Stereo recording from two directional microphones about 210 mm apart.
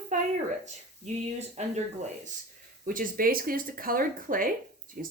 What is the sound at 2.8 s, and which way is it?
Speech, 40° right (ahead or behind).